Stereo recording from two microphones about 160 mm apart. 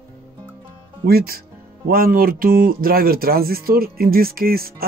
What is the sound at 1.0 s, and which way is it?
Speech, 70° right (ahead or behind).